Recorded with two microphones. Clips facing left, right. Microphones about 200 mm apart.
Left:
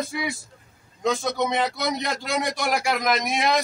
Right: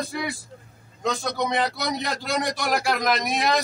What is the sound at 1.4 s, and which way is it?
A man's voice, 5° left (ahead or behind).